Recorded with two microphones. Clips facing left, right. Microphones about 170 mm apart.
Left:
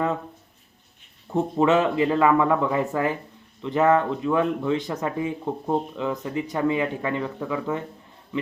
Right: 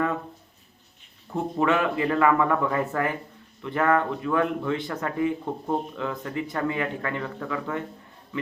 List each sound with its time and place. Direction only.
1.5 s speech: 20° left (ahead or behind)